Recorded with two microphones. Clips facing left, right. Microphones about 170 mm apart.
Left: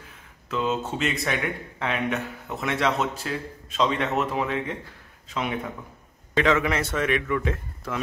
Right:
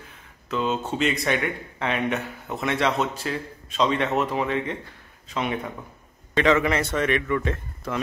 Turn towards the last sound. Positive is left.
turn(degrees=5)  # may be behind; listen again after turning